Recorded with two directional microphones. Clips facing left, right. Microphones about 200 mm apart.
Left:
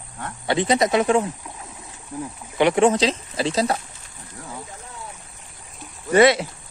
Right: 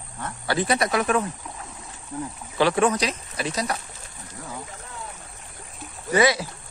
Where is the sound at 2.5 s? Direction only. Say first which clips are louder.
Left 4 dB; 20° left (ahead or behind).